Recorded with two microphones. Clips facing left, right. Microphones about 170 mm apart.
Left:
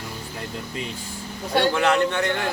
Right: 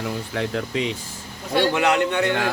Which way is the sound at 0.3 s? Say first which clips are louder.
Right 8 dB; 90° right.